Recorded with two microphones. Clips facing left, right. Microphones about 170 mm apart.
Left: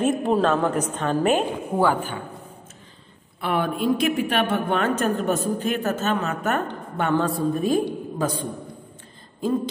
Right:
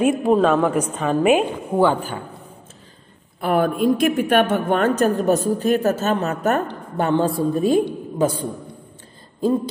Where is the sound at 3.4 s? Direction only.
45° right (ahead or behind); by 7.8 s 30° right (ahead or behind).